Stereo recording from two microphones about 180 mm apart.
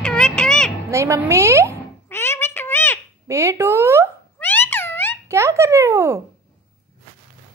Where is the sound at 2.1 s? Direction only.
15° left (ahead or behind).